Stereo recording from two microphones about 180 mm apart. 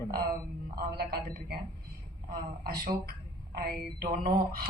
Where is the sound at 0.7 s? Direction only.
60° right (ahead or behind).